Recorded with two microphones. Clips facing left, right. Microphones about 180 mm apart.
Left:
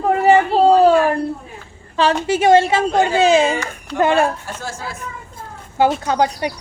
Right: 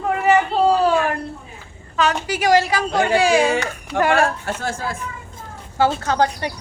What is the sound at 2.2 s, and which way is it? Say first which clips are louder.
Speech: left 6 dB; 25° left (ahead or behind).